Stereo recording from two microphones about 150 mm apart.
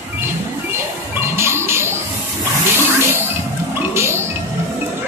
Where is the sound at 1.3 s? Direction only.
15° right (ahead or behind).